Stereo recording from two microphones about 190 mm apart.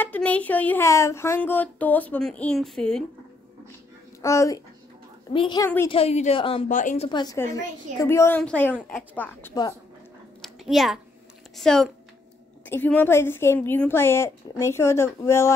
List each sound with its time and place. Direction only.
0.0 s speech: 10° left (ahead or behind)
4.2 s a woman's voice: 15° left (ahead or behind)
6.7 s a woman's voice: 40° left (ahead or behind)
7.1 s a woman's voice: 25° left (ahead or behind)
10.4 s a sound: centre (ahead or behind)
11.5 s a woman's voice: centre (ahead or behind)